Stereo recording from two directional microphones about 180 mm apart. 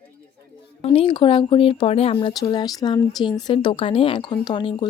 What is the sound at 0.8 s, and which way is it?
Speech, 30° left (ahead or behind).